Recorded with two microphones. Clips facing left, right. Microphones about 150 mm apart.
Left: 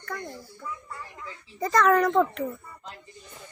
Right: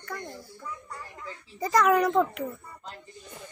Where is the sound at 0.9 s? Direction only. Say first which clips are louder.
Even; 40° right (ahead or behind).